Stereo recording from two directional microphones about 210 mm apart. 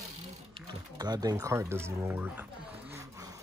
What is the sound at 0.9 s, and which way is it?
Speech, 20° right (ahead or behind).